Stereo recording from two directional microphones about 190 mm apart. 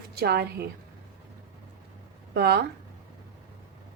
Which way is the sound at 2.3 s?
60° right (ahead or behind).